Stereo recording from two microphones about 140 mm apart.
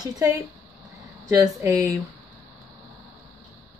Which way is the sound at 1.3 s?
25° right (ahead or behind).